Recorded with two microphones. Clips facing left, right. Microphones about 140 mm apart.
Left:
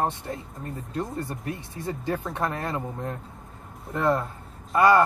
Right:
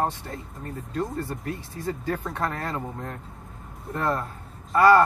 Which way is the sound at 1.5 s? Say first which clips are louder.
Right 1 dB; 20° left (ahead or behind).